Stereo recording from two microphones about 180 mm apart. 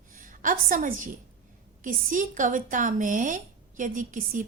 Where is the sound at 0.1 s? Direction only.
50° right (ahead or behind).